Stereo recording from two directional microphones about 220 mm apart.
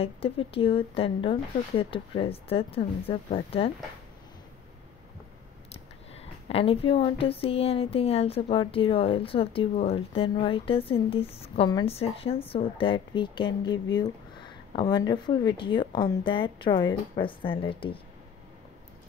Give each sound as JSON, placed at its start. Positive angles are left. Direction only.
{"t": 0.0, "sound": "speech", "side_deg": 25}
{"t": 6.5, "sound": "speech", "side_deg": 25}